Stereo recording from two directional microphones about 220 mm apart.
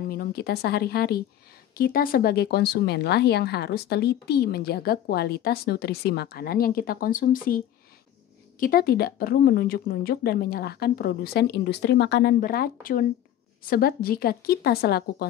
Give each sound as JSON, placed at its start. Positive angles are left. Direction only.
{"t": 0.0, "sound": "speech", "side_deg": 40}